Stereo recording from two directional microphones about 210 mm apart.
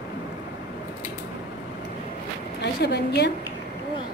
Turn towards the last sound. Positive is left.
turn(degrees=50)  # may be behind; listen again after turning